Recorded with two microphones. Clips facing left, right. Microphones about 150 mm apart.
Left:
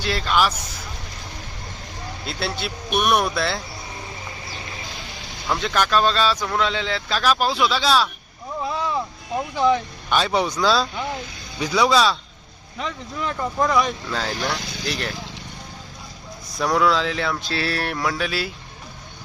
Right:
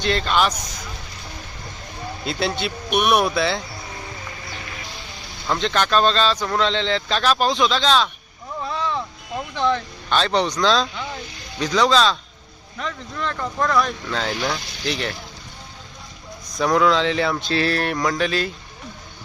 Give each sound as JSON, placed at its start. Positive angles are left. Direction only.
{"t": 0.0, "sound": "speech", "side_deg": 5}
{"t": 2.2, "sound": "speech", "side_deg": 0}
{"t": 2.9, "sound": "speech", "side_deg": -15}
{"t": 3.2, "sound": "speech", "side_deg": 0}
{"t": 4.4, "sound": "a sound", "side_deg": 30}
{"t": 5.5, "sound": "speech", "side_deg": 5}
{"t": 8.6, "sound": "vehicle", "side_deg": 5}
{"t": 9.6, "sound": "speech", "side_deg": 10}
{"t": 16.5, "sound": "speech", "side_deg": 0}